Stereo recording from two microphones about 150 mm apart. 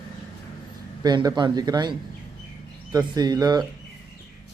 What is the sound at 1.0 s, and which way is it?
Speech, 30° right (ahead or behind).